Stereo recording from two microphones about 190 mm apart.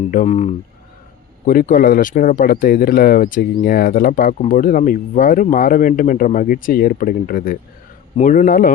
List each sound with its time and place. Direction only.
0.0 s speech: 40° left (ahead or behind)
1.5 s speech: 45° left (ahead or behind)